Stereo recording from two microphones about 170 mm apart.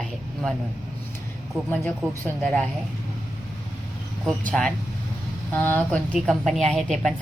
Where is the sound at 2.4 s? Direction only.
5° left (ahead or behind).